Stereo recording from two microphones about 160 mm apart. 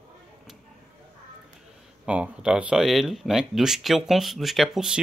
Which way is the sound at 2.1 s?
5° right (ahead or behind).